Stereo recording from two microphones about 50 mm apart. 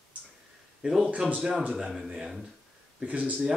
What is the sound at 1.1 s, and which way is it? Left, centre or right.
Speech, right.